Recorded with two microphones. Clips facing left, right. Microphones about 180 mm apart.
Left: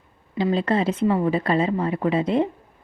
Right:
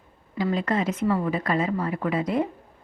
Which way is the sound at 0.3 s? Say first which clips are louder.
Left 3 dB; 25° left (ahead or behind).